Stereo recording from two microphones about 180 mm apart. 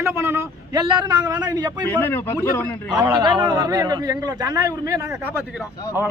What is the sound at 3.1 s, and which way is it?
A man's voice, 25° right (ahead or behind).